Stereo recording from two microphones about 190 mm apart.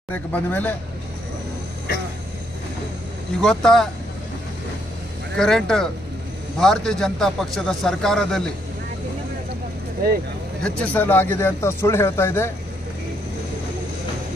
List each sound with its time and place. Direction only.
0.1 s speech: 10° left (ahead or behind)
3.3 s speech: centre (ahead or behind)
5.3 s speech: 5° left (ahead or behind)
10.8 s speech: 10° left (ahead or behind)